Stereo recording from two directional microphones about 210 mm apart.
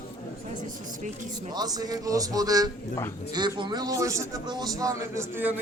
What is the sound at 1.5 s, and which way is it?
A man's voice, 20° right (ahead or behind).